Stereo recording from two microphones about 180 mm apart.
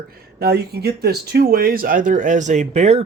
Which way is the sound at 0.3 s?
60° right (ahead or behind).